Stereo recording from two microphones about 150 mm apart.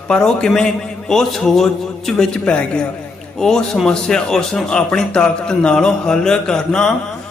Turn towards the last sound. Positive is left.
turn(degrees=5)  # may be behind; listen again after turning